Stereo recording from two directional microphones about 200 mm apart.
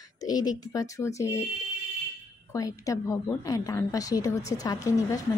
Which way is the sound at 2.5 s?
15° left (ahead or behind).